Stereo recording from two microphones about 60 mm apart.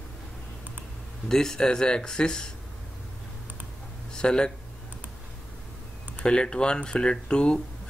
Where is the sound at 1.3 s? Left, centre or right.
Centre.